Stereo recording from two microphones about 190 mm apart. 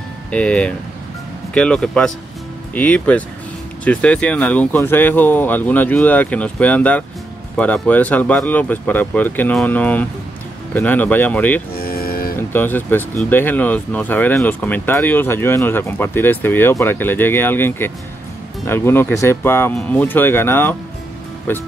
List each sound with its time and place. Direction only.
0.3 s speech: 5° left (ahead or behind)
11.7 s music: 50° left (ahead or behind)
12.4 s speech: 10° left (ahead or behind)